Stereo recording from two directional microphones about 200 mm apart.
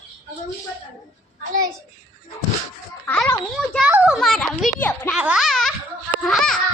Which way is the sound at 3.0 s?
5° left (ahead or behind).